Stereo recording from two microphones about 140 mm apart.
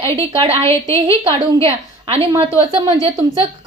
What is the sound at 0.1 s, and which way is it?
Speech, 40° right (ahead or behind).